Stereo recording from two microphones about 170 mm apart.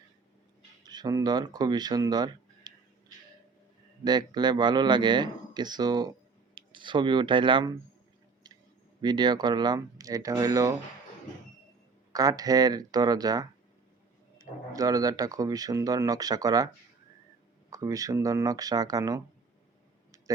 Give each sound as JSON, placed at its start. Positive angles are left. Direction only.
{"t": 0.9, "sound": "speech", "side_deg": -25}
{"t": 4.0, "sound": "speech", "side_deg": -25}
{"t": 8.4, "sound": "clicking", "side_deg": -25}
{"t": 9.0, "sound": "speech", "side_deg": -25}
{"t": 12.1, "sound": "speech", "side_deg": -20}
{"t": 17.7, "sound": "speech", "side_deg": -20}